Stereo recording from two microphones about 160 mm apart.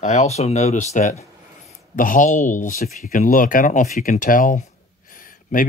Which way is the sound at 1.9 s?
55° left (ahead or behind).